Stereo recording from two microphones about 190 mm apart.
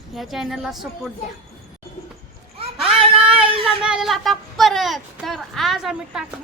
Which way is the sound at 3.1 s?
5° right (ahead or behind).